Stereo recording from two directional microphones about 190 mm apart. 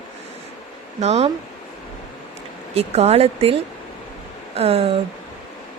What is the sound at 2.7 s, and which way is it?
A woman's voice, 35° right (ahead or behind).